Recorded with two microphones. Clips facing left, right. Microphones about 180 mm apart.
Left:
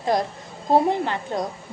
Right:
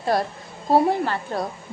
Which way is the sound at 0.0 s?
15° left (ahead or behind).